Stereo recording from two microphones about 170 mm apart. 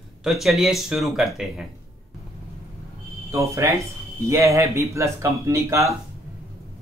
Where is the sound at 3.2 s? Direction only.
15° right (ahead or behind).